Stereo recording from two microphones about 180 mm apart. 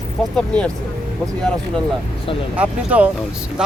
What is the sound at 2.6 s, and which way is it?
Speech, 5° right (ahead or behind).